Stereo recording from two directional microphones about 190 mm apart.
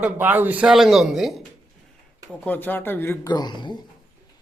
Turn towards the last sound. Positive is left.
turn(degrees=25)  # may be behind; listen again after turning